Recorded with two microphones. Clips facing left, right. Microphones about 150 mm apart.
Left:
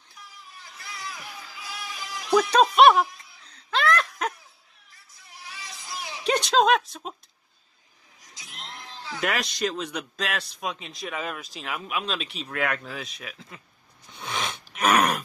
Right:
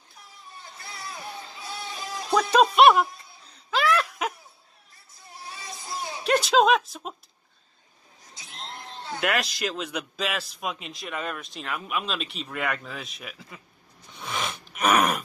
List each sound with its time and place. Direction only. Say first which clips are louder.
0.2 s vehicle: right 1 dB; 30° right (ahead or behind)
2.5 s a man's voice: right 1 dB; centre (ahead or behind)
3.5 s a sound: even; 5° right (ahead or behind)
4.9 s a sound: right 4 dB; 30° right (ahead or behind)
6.2 s speech: right 1 dB; centre (ahead or behind)
8.2 s sheep: right 2 dB; 30° right (ahead or behind)
9.2 s a man's voice: even; centre (ahead or behind)
14.1 s sniff: even; centre (ahead or behind)